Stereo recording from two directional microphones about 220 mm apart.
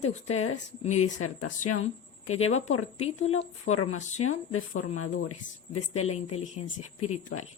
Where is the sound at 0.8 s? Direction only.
30° left (ahead or behind).